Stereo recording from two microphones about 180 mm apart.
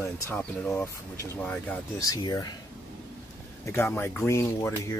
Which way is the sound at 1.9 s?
20° left (ahead or behind).